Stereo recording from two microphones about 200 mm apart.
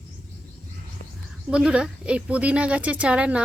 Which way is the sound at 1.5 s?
5° right (ahead or behind).